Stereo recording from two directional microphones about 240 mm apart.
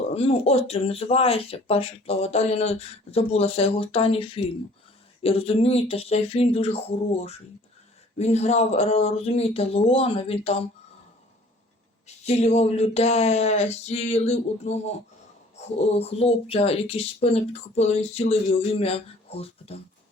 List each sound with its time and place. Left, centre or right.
0.1 s speech: left
12.0 s speech: left